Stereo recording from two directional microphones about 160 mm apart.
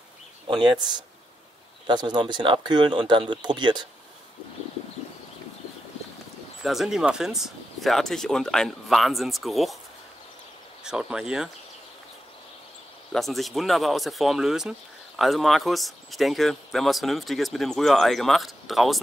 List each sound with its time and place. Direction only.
0.5 s speech: 30° right (ahead or behind)
6.6 s speech: centre (ahead or behind)
10.8 s speech: 5° right (ahead or behind)
13.1 s speech: centre (ahead or behind)